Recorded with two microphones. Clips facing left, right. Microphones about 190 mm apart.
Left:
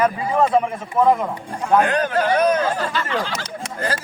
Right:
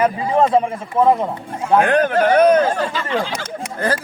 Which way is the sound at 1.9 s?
55° right (ahead or behind).